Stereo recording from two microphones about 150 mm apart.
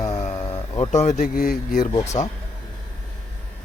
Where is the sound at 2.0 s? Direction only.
20° left (ahead or behind).